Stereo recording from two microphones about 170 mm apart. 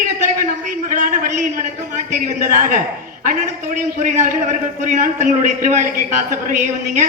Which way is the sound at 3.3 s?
45° right (ahead or behind).